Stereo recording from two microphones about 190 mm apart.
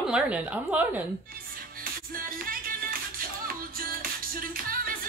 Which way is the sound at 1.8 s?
50° right (ahead or behind).